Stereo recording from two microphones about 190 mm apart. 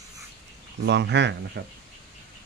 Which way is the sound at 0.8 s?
65° right (ahead or behind).